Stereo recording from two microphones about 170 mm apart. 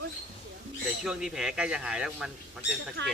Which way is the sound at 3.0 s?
90° right.